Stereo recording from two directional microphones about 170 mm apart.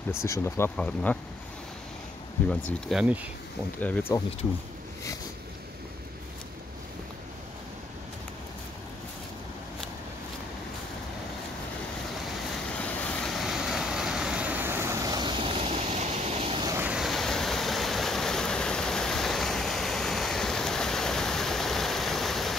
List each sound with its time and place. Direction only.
0.1 s speech: 15° left (ahead or behind)
2.4 s speech: 5° left (ahead or behind)
3.0 s speech: 10° right (ahead or behind)
3.8 s speech: 10° left (ahead or behind)
12.8 s vehicle: 5° left (ahead or behind); by 16.6 s 35° right (ahead or behind)
16.6 s vehicle: 15° right (ahead or behind)
16.9 s waterfall: centre (ahead or behind)